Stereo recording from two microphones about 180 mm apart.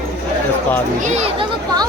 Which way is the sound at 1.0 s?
35° right (ahead or behind).